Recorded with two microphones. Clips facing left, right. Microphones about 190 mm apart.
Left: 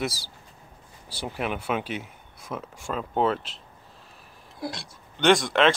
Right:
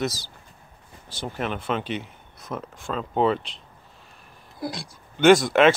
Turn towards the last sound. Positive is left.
turn(degrees=-5)  # may be behind; listen again after turning